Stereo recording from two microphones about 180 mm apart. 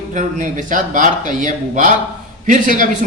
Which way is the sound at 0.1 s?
45° right (ahead or behind).